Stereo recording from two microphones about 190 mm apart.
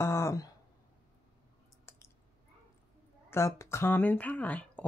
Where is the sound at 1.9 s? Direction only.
15° left (ahead or behind).